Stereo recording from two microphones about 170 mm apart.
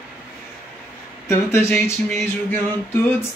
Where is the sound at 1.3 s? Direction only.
15° left (ahead or behind).